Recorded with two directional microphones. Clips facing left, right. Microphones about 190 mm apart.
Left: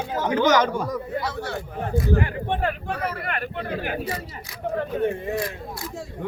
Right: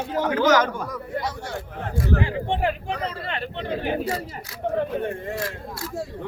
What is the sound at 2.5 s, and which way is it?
Speech, 15° right (ahead or behind).